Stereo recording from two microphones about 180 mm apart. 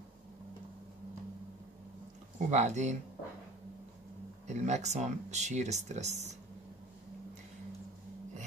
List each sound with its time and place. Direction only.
2.3 s speech: 40° right (ahead or behind)
4.5 s speech: 40° right (ahead or behind)